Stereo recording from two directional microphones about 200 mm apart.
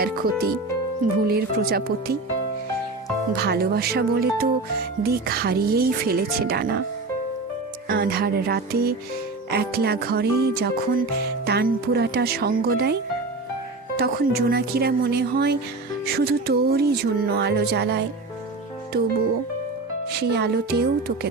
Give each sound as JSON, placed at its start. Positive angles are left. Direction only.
{"t": 0.0, "sound": "speech", "side_deg": -50}
{"t": 3.4, "sound": "speech", "side_deg": -50}
{"t": 7.9, "sound": "speech", "side_deg": -50}
{"t": 20.1, "sound": "speech", "side_deg": -55}